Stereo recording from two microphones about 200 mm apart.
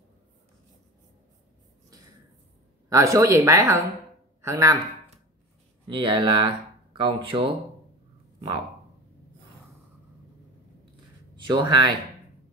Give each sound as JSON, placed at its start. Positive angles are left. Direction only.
{"t": 2.9, "sound": "a man's voice", "side_deg": -15}
{"t": 5.9, "sound": "speech", "side_deg": -25}
{"t": 11.3, "sound": "speech", "side_deg": -25}